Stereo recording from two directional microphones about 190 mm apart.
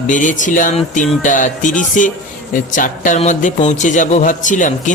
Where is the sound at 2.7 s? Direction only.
40° left (ahead or behind).